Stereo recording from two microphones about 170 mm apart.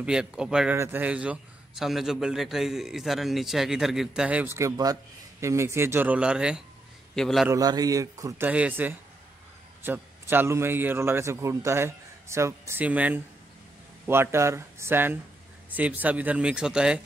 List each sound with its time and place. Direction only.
0.0 s a man's voice: 5° right (ahead or behind)
7.4 s a man's voice: 20° right (ahead or behind); by 17.0 s 5° right (ahead or behind)